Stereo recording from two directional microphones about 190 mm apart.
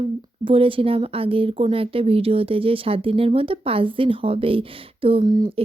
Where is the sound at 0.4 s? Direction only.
30° right (ahead or behind).